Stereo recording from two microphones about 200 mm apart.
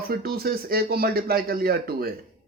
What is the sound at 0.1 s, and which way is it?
A man's voice, 50° right (ahead or behind).